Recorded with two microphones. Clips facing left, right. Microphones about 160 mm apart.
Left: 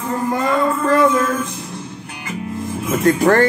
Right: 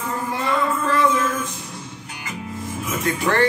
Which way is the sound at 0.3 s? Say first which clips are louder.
Left 5 dB; 45° left (ahead or behind).